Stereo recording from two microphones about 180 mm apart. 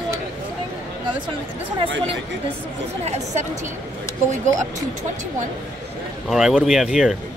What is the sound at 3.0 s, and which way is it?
Speech, 40° right (ahead or behind).